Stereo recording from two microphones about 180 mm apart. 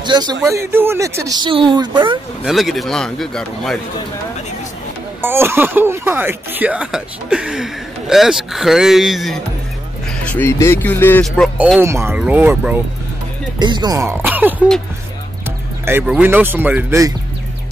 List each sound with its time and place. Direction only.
0.0 s speech: 25° right (ahead or behind)
2.4 s speech: centre (ahead or behind)
5.2 s speech: 15° right (ahead or behind)
10.2 s speech: 10° left (ahead or behind)
11.4 s speech: 5° right (ahead or behind)
13.6 s speech: 25° right (ahead or behind)
15.8 s speech: 10° right (ahead or behind)